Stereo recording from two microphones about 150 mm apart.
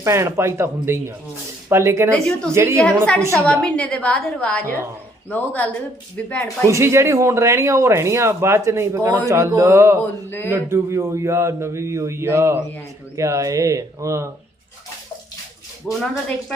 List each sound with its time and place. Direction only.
0.0 s speech: 20° right (ahead or behind)
2.0 s a woman's voice: 5° left (ahead or behind)
2.5 s speech: 15° right (ahead or behind)
3.6 s a woman's voice: 5° left (ahead or behind)
6.7 s speech: 20° right (ahead or behind)
10.0 s a woman's voice: 15° left (ahead or behind)
10.5 s speech: 20° right (ahead or behind)
15.9 s a woman's voice: 5° right (ahead or behind)